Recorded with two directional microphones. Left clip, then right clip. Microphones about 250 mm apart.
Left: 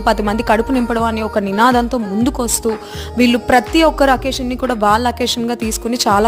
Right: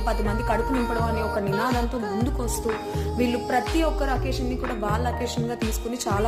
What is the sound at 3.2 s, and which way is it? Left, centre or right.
A woman's voice, left.